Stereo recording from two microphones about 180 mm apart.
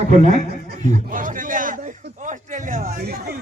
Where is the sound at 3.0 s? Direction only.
60° right (ahead or behind).